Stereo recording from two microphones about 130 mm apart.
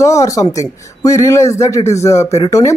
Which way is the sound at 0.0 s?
25° left (ahead or behind).